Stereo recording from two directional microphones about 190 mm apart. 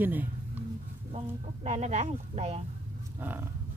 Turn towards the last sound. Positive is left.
turn(degrees=-10)  # may be behind; listen again after turning